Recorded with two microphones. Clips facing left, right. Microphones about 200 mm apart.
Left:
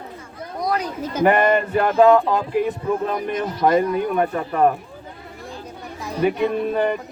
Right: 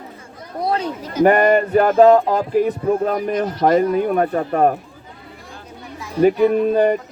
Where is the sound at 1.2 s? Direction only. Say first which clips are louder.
Right 4 dB; 45° right (ahead or behind).